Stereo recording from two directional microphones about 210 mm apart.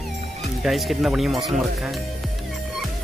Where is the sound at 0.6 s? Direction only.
Centre (ahead or behind).